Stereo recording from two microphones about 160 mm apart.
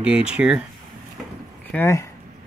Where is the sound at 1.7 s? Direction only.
15° left (ahead or behind).